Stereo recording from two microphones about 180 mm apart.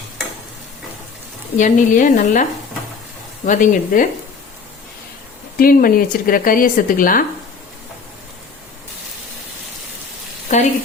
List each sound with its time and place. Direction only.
1.5 s speech: 45° left (ahead or behind)
5.5 s speech: 55° left (ahead or behind)
10.5 s frying: 45° left (ahead or behind)